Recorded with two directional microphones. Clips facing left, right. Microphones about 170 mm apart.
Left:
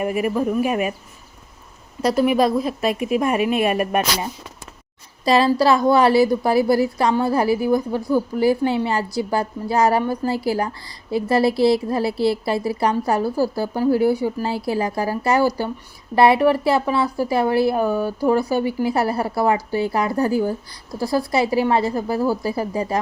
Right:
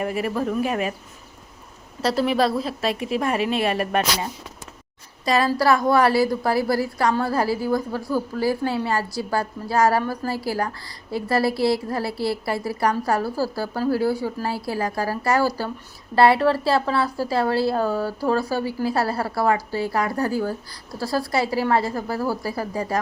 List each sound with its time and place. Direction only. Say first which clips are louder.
0.0 s a woman's voice: left 4 dB; 15° left (ahead or behind)
2.0 s a woman's voice: left 3 dB; 15° left (ahead or behind)
5.2 s a woman's voice: left 4 dB; 30° left (ahead or behind)